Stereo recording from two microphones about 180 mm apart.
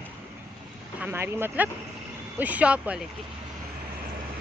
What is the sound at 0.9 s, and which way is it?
Speech, 10° right (ahead or behind).